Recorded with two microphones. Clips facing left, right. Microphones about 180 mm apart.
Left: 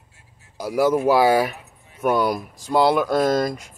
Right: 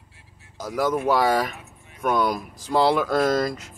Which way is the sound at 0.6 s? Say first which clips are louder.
Left 5 dB; 10° left (ahead or behind).